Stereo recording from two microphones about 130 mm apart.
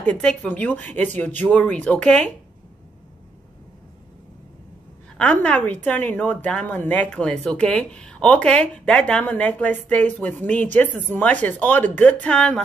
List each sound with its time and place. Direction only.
0.0 s speech: 10° left (ahead or behind)
5.1 s speech: 10° left (ahead or behind)